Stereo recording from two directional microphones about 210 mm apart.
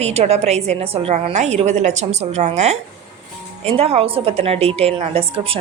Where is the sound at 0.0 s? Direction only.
30° right (ahead or behind).